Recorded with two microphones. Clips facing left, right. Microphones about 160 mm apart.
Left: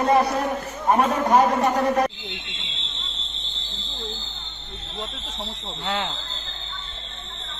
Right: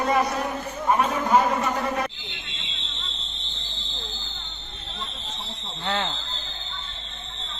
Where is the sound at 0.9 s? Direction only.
40° left (ahead or behind).